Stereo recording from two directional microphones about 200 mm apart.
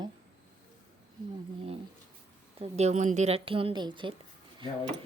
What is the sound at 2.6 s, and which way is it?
A woman's voice, 35° right (ahead or behind).